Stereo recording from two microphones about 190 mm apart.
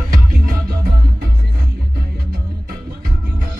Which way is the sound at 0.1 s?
50° right (ahead or behind).